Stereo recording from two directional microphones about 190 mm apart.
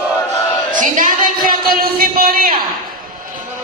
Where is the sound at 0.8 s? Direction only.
45° right (ahead or behind).